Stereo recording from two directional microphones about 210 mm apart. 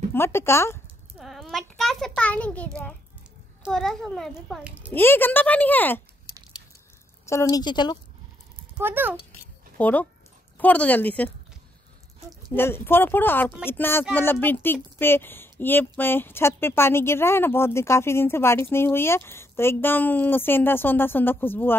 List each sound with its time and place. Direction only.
0.1 s speech: 10° left (ahead or behind)
1.1 s a sound: centre (ahead or behind)
3.6 s a child's voice: centre (ahead or behind)
4.9 s speech: 10° left (ahead or behind)
7.2 s a woman's voice: 15° left (ahead or behind)
8.7 s speech: 10° right (ahead or behind)
9.8 s speech: 10° left (ahead or behind)
12.5 s speech: 10° left (ahead or behind)